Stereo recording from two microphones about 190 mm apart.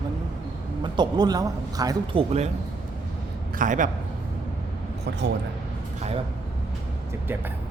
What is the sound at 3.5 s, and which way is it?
Speech, 45° right (ahead or behind).